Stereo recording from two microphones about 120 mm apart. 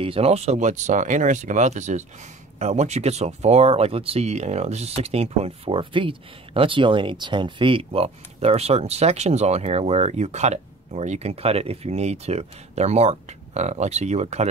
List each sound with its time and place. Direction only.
0.0 s speech: 55° right (ahead or behind)